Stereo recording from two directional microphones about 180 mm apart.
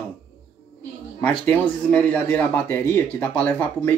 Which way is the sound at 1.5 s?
10° left (ahead or behind).